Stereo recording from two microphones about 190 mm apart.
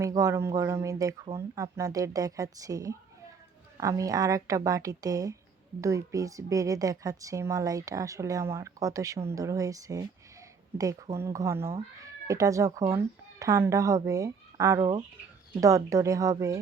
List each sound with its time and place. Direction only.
0.0 s a woman's voice: 15° right (ahead or behind)